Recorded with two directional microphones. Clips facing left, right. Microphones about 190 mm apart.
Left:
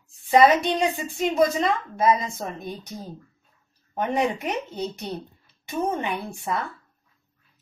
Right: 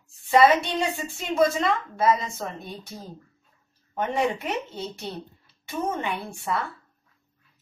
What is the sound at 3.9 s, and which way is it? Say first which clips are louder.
A woman's voice: left 1 dB; 20° left (ahead or behind).